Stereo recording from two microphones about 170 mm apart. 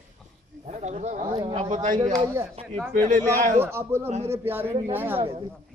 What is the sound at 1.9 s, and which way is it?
Speech, 25° right (ahead or behind).